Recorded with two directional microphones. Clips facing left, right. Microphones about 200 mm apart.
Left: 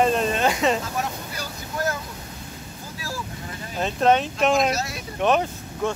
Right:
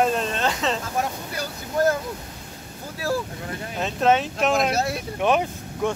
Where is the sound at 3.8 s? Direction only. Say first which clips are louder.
Left 1 dB; 5° right (ahead or behind).